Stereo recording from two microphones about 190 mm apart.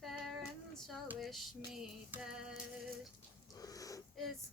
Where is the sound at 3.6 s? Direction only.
20° left (ahead or behind).